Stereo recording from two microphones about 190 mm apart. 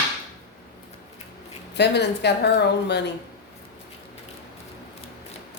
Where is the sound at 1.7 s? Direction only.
60° left (ahead or behind).